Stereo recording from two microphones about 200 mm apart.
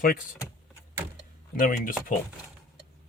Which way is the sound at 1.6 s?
45° left (ahead or behind).